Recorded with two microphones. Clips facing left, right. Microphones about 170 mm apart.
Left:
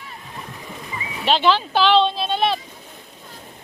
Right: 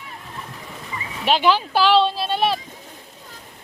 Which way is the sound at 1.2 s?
10° right (ahead or behind).